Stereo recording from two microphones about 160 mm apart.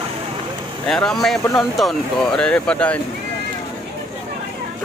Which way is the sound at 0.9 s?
5° left (ahead or behind).